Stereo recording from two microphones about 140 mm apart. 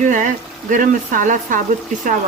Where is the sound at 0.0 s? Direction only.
65° right (ahead or behind).